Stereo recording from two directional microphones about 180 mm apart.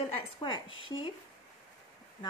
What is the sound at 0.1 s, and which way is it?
Speech, 25° left (ahead or behind).